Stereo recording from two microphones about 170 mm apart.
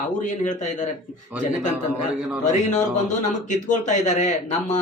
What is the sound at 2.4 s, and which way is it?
Speech, 45° left (ahead or behind).